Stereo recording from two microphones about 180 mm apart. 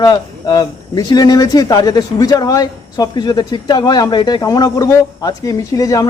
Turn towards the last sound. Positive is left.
turn(degrees=20)  # may be behind; listen again after turning